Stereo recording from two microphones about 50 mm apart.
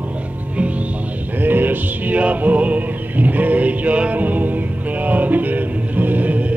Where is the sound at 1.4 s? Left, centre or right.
Right.